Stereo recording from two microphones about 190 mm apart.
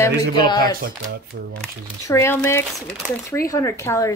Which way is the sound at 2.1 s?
15° left (ahead or behind).